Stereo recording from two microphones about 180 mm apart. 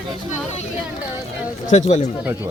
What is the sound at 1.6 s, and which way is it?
Speech, 40° left (ahead or behind).